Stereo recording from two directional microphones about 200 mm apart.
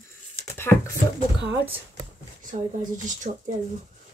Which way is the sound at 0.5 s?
10° left (ahead or behind).